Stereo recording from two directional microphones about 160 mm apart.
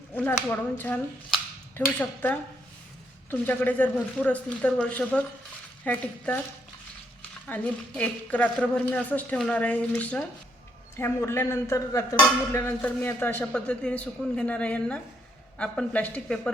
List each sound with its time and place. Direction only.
0.1 s a woman's voice: 10° left (ahead or behind)
7.4 s a woman's voice: 10° left (ahead or behind)